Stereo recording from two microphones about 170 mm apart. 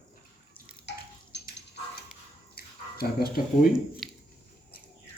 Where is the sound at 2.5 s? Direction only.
65° left (ahead or behind).